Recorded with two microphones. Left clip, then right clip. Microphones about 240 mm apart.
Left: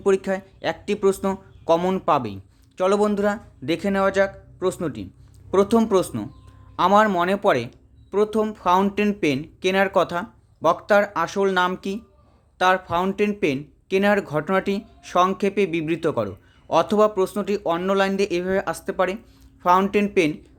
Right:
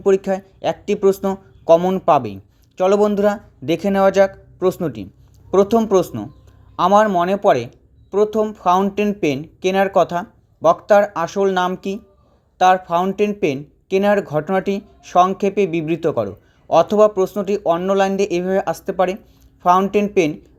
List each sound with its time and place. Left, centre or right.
0.0 s speech: centre